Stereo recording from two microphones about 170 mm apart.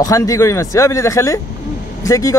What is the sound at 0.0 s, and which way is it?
Speech, 20° left (ahead or behind).